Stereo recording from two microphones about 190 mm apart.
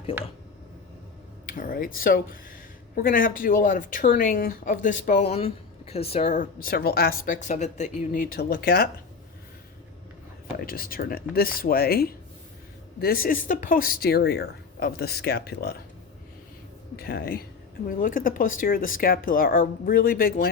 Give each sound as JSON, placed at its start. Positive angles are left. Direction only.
{"t": 0.1, "sound": "speech", "side_deg": 30}
{"t": 1.5, "sound": "speech", "side_deg": 45}
{"t": 10.6, "sound": "speech", "side_deg": 50}
{"t": 17.0, "sound": "speech", "side_deg": 50}